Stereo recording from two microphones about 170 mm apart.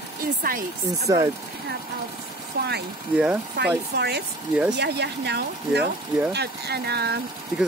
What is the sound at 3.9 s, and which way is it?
Speech, 75° right (ahead or behind).